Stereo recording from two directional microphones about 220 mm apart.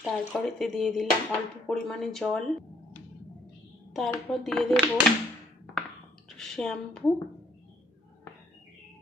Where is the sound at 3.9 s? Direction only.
Centre (ahead or behind).